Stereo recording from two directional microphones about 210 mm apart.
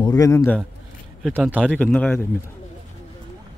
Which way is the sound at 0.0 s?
15° left (ahead or behind).